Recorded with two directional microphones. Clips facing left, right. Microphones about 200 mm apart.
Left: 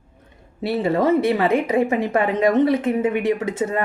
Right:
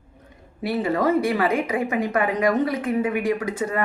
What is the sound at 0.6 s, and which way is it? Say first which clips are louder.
A woman's voice: left 3 dB; 25° left (ahead or behind).